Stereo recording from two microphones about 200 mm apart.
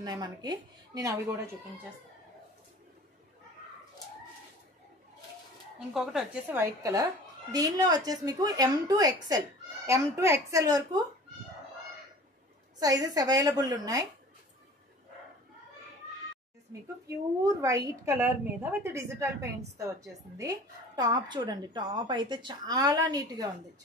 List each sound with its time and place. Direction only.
0.0 s a woman's voice: 20° right (ahead or behind)
5.9 s a woman's voice: 5° right (ahead or behind)
12.7 s a woman's voice: 20° right (ahead or behind)
17.4 s a woman's voice: 15° right (ahead or behind)